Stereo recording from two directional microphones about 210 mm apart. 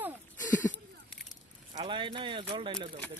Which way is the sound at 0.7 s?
5° left (ahead or behind).